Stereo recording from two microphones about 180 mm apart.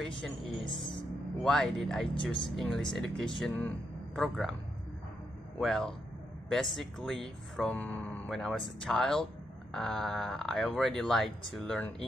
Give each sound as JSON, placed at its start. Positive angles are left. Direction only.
{"t": 0.7, "sound": "speech", "side_deg": 25}
{"t": 1.4, "sound": "speech", "side_deg": 5}
{"t": 5.6, "sound": "speech", "side_deg": 0}